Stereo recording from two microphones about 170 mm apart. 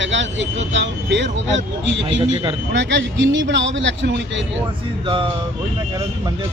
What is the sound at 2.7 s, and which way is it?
Speech, 90° right.